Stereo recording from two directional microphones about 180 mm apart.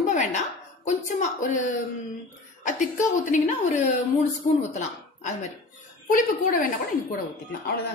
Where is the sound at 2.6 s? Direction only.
45° left (ahead or behind).